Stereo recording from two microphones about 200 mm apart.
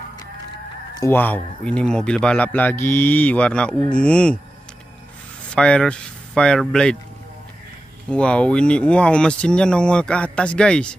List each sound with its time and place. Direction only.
0.9 s a man's voice: 10° left (ahead or behind)
5.5 s speech: 5° left (ahead or behind)
8.1 s speech: 5° left (ahead or behind)